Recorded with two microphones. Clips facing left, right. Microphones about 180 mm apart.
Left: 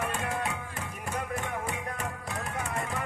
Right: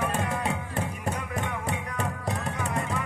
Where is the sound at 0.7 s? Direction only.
35° right (ahead or behind).